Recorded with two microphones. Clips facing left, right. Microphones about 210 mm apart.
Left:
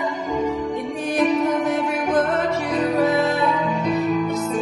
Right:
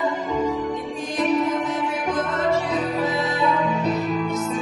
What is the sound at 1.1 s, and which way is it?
Music, 60° left (ahead or behind).